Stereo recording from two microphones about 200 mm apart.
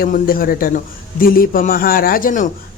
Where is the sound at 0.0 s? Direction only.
45° left (ahead or behind).